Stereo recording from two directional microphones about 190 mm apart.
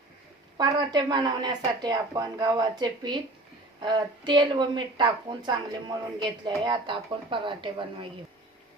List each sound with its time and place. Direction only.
0.5 s a woman's voice: 20° right (ahead or behind)